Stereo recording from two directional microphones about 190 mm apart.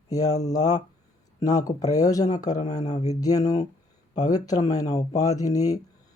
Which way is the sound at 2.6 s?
35° left (ahead or behind).